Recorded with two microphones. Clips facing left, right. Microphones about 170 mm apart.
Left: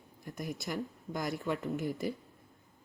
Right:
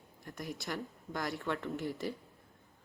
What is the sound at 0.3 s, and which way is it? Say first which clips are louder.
Speech: left 2 dB; 10° left (ahead or behind).